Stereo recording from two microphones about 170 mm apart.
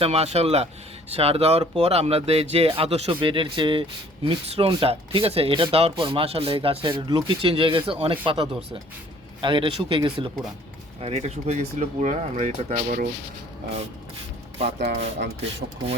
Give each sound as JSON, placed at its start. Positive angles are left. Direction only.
{"t": 0.0, "sound": "speech", "side_deg": -40}
{"t": 14.8, "sound": "speech", "side_deg": -70}